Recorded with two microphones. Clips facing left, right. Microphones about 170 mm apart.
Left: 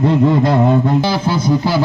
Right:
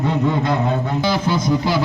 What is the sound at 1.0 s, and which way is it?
Speech, 30° left (ahead or behind).